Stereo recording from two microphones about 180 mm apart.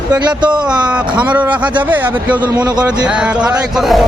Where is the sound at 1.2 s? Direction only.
10° right (ahead or behind).